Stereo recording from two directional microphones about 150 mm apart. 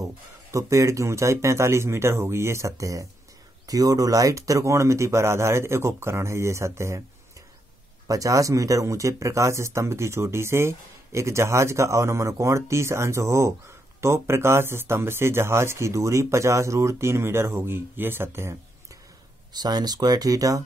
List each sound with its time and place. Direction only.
0.0 s speech: 20° right (ahead or behind)
8.1 s speech: 20° right (ahead or behind)